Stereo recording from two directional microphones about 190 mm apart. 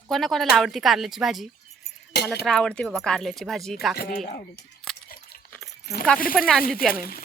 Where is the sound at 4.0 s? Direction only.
55° left (ahead or behind).